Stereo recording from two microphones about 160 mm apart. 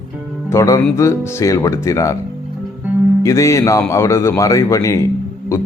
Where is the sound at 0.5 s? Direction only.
20° left (ahead or behind).